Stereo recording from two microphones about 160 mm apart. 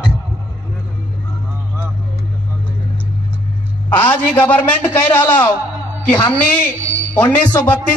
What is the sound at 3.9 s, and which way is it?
A man's voice, 10° left (ahead or behind).